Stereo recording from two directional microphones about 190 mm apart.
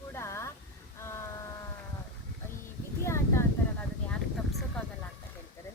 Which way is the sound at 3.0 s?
15° left (ahead or behind).